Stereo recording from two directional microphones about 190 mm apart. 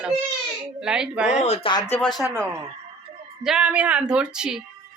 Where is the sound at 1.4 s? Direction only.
35° left (ahead or behind).